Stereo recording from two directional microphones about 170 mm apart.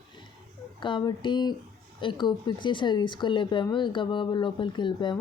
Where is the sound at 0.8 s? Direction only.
25° left (ahead or behind).